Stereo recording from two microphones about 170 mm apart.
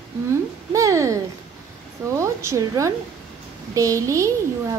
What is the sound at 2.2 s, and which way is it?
A woman's voice, 15° right (ahead or behind).